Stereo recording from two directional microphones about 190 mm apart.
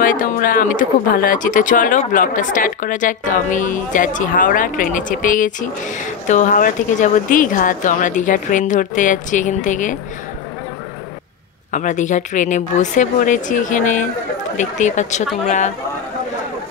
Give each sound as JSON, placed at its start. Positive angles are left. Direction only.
{"t": 0.0, "sound": "speech", "side_deg": 45}
{"t": 11.7, "sound": "speech", "side_deg": 40}